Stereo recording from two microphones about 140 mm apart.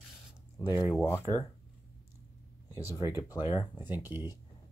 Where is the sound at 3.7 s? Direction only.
15° right (ahead or behind).